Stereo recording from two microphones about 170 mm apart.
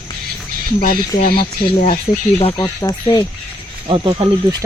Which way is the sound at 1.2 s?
60° left (ahead or behind).